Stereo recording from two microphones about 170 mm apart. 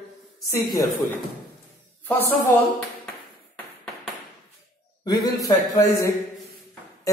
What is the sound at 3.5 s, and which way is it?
Tap, centre (ahead or behind).